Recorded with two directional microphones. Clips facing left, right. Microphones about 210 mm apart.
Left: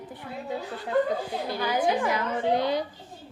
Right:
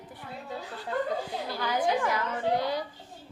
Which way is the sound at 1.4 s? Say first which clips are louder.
Left 3 dB; 20° left (ahead or behind).